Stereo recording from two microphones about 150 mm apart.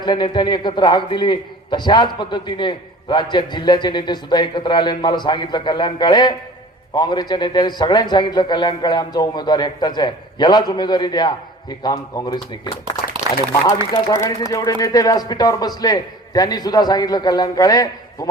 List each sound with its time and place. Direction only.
0.0 s a man's voice: 30° left (ahead or behind)
13.9 s a man's voice: 25° left (ahead or behind)